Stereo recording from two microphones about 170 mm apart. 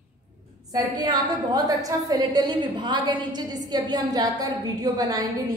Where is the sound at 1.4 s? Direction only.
20° right (ahead or behind).